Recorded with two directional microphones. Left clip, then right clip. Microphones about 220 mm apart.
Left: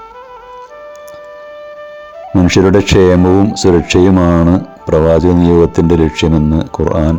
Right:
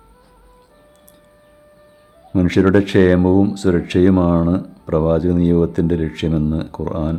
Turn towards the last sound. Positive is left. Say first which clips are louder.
# left 10 dB
turn(degrees=25)  # may be behind; listen again after turning